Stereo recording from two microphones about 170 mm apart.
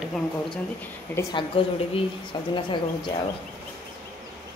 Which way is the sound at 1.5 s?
30° left (ahead or behind).